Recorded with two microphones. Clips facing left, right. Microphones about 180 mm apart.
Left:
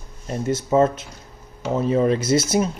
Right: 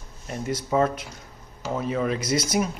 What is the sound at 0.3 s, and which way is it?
Speech, 25° left (ahead or behind).